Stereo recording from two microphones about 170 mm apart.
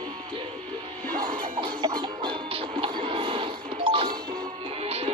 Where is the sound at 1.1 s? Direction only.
25° right (ahead or behind).